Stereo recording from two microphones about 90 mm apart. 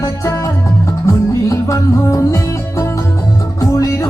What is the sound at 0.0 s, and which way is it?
Music, 35° left (ahead or behind).